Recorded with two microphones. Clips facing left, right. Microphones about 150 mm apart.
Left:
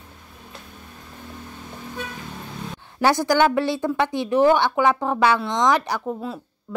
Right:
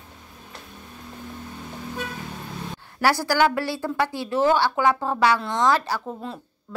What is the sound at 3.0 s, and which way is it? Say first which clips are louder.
A woman's voice: left 2 dB; 20° left (ahead or behind).